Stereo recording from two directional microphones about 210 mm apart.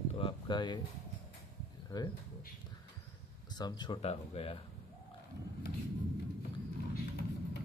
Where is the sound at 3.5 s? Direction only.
20° left (ahead or behind).